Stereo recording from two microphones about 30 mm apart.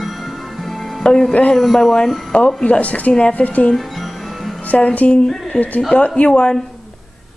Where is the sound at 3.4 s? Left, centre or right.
Left.